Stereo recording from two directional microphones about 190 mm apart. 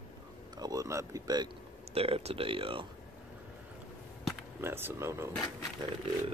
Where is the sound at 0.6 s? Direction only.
20° right (ahead or behind).